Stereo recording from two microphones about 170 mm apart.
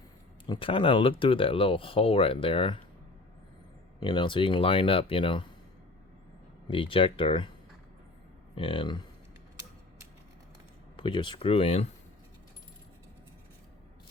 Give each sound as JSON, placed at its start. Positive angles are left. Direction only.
{"t": 0.4, "sound": "speech", "side_deg": 30}
{"t": 4.0, "sound": "speech", "side_deg": 25}
{"t": 6.7, "sound": "speech", "side_deg": 30}
{"t": 8.5, "sound": "speech", "side_deg": 30}
{"t": 10.9, "sound": "speech", "side_deg": 30}